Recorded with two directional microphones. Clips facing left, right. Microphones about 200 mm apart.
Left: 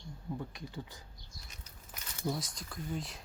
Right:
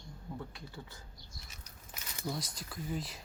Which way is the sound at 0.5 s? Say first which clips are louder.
Left 4 dB; 15° left (ahead or behind).